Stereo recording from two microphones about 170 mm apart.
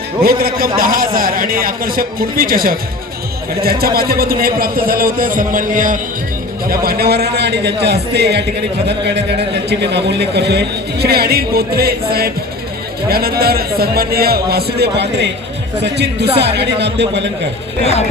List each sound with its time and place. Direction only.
0.2 s a man's voice: 60° right (ahead or behind)
6.8 s a man's voice: 65° right (ahead or behind)
8.9 s a man's voice: 90° right
16.4 s a man's voice: 80° right